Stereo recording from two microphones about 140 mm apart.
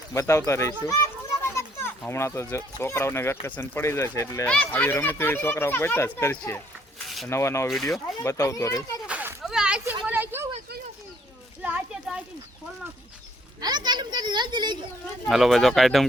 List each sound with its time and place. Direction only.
0.1 s speech: 20° left (ahead or behind)
4.4 s speech: 10° left (ahead or behind)
7.7 s speech: centre (ahead or behind)
8.2 s speech: 20° left (ahead or behind)
9.0 s a sound: 10° right (ahead or behind)
11.6 s a sound: 10° right (ahead or behind)
13.6 s a child's voice: 30° right (ahead or behind)
15.3 s speech: centre (ahead or behind)